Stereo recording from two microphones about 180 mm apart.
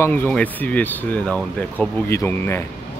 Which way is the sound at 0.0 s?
10° left (ahead or behind).